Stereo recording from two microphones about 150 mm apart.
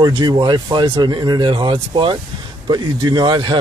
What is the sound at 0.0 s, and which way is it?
Speech, 30° right (ahead or behind).